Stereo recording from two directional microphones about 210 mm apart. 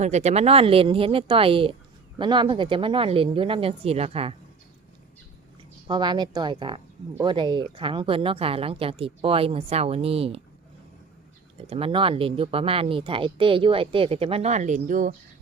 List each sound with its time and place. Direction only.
0.0 s speech: 30° right (ahead or behind)
5.9 s speech: 20° right (ahead or behind)
11.7 s speech: 25° right (ahead or behind)